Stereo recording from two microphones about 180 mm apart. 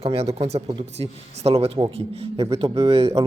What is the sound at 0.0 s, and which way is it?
A man's voice, 35° right (ahead or behind).